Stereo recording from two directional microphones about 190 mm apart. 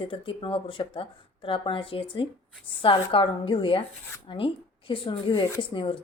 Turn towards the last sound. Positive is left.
turn(degrees=25)  # may be behind; listen again after turning